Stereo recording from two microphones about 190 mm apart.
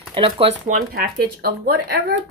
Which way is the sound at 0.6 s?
50° right (ahead or behind).